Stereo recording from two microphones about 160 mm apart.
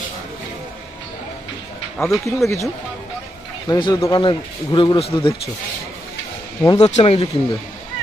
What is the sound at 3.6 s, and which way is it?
Speech, 30° left (ahead or behind).